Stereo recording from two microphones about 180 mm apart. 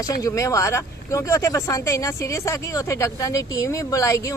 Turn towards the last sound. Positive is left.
turn(degrees=20)  # may be behind; listen again after turning